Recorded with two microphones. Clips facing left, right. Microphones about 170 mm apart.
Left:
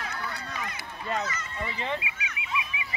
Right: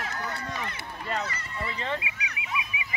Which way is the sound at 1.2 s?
35° right (ahead or behind).